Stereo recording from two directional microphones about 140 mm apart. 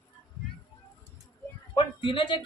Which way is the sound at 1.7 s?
35° left (ahead or behind).